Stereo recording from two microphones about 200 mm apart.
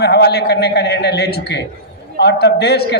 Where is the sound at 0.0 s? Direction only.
55° left (ahead or behind).